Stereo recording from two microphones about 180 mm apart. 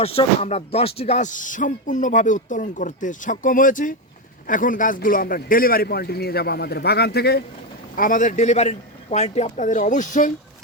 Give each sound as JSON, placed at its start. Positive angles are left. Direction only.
{"t": 0.0, "sound": "a man's voice", "side_deg": 35}
{"t": 7.9, "sound": "speech", "side_deg": 50}